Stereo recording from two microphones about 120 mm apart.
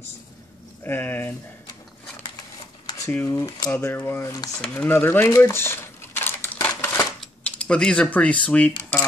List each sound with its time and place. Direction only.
0.8 s speech: 15° left (ahead or behind)
3.3 s speech: 25° left (ahead or behind)
3.7 s speech: 20° left (ahead or behind)
4.6 s a sound: 15° left (ahead or behind)
7.2 s speech: 10° left (ahead or behind)